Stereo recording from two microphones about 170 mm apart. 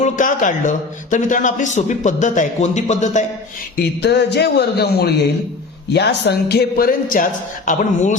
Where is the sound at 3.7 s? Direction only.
80° left.